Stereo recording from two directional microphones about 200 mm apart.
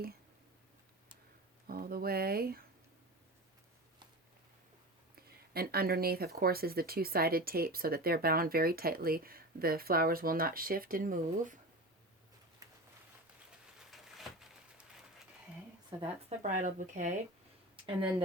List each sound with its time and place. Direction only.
1.6 s speech: 45° right (ahead or behind)
5.5 s speech: 50° right (ahead or behind)
13.9 s a sound: centre (ahead or behind)
15.9 s speech: 20° right (ahead or behind)
16.4 s speech: 40° right (ahead or behind)